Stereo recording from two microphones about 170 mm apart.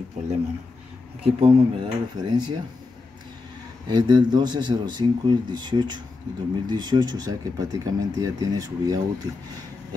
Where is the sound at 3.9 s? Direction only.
25° right (ahead or behind).